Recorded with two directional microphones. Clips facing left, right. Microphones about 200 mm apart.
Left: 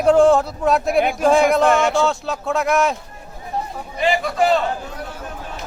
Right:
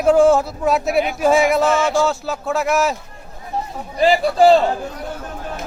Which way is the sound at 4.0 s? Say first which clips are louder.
Right 5 dB; 35° right (ahead or behind).